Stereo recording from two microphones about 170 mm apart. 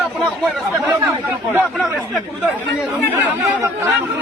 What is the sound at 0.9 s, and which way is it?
Chatter, 15° right (ahead or behind).